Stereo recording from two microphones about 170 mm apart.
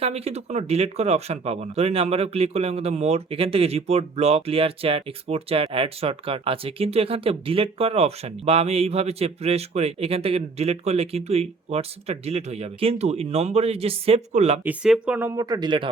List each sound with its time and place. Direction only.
0.0 s speech: 35° right (ahead or behind)
14.6 s speech: 5° right (ahead or behind); by 15.9 s 25° right (ahead or behind)